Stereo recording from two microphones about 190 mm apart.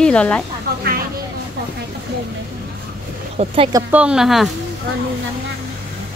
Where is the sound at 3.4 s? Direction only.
35° right (ahead or behind).